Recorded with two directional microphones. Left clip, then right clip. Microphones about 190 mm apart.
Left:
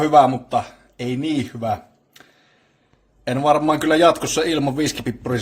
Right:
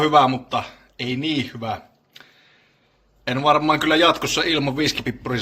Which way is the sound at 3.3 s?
40° left (ahead or behind).